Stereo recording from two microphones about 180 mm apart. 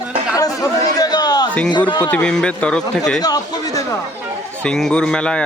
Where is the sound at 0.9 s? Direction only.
20° left (ahead or behind).